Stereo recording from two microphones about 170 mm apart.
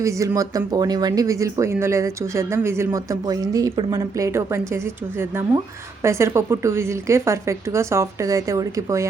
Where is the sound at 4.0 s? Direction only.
20° right (ahead or behind).